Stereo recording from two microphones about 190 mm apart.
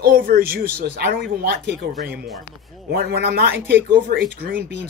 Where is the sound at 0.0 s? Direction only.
50° right (ahead or behind).